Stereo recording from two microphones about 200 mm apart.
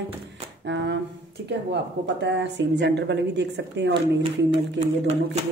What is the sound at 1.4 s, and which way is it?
Speech, 60° right (ahead or behind).